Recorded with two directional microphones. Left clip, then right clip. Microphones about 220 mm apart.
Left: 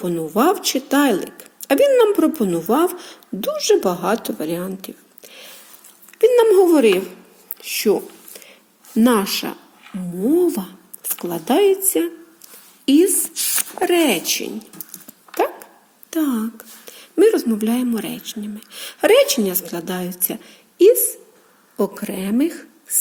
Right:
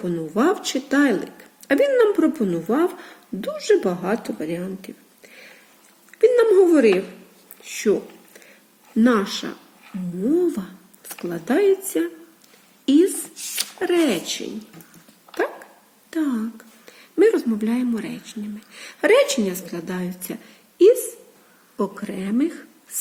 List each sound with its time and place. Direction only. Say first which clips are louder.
0.0 s a woman's voice: left 4 dB; 15° left (ahead or behind)
6.1 s a woman's voice: left 2 dB; 20° left (ahead or behind)
9.0 s speech: left 3 dB; 20° left (ahead or behind)
10.2 s a sound: left 3 dB; 20° left (ahead or behind)
11.3 s a woman's voice: left 3 dB; 15° left (ahead or behind)
12.8 s a sound: left 2 dB; 20° left (ahead or behind)
13.7 s speech: left 3 dB; 20° left (ahead or behind)
16.0 s a woman's voice: left 3 dB; 15° left (ahead or behind)